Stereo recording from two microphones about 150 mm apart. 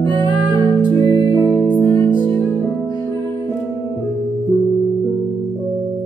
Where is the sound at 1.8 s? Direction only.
30° left (ahead or behind).